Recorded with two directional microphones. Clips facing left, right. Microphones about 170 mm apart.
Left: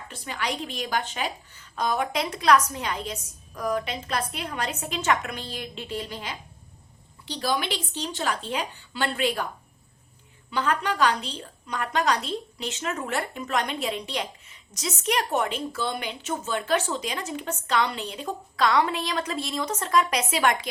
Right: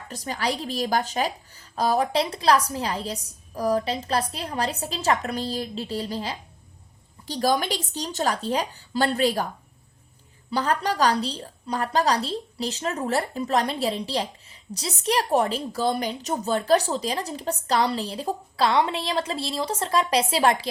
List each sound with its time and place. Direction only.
0.1 s a woman's voice: 40° right (ahead or behind)
10.5 s a woman's voice: 35° right (ahead or behind)